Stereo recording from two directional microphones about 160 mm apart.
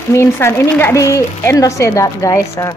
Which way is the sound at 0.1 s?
15° left (ahead or behind).